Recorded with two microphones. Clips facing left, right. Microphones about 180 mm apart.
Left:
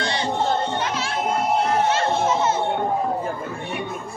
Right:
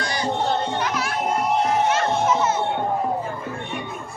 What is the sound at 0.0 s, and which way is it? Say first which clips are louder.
Music: left 1 dB; 25° left (ahead or behind).